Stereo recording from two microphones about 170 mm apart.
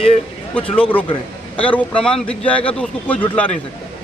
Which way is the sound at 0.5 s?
5° left (ahead or behind).